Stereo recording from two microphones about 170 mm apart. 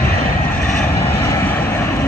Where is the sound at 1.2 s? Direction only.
15° left (ahead or behind).